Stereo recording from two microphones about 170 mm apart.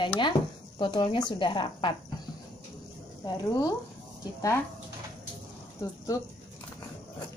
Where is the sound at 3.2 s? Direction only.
20° left (ahead or behind).